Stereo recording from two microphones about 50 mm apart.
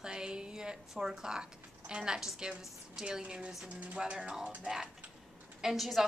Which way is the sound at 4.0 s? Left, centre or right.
Centre.